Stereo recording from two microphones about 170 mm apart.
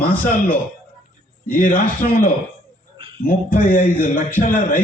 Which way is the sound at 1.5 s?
55° left (ahead or behind).